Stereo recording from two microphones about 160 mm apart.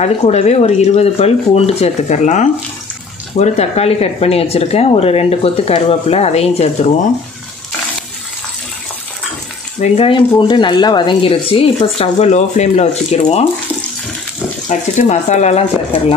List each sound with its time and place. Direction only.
0.0 s speech: 45° left (ahead or behind)
9.8 s speech: 35° left (ahead or behind)
14.7 s speech: 45° left (ahead or behind)